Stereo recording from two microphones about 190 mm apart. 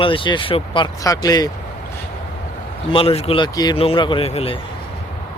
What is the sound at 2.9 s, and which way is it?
Speech, 30° left (ahead or behind).